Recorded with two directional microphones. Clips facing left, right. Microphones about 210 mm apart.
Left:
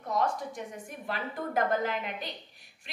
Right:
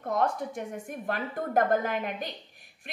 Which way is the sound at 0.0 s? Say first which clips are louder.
Right 2 dB; 55° right (ahead or behind).